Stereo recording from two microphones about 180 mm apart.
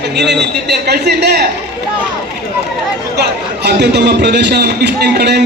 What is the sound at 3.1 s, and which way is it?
A man's voice, 65° right (ahead or behind).